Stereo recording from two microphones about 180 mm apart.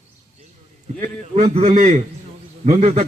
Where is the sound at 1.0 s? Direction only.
40° right (ahead or behind).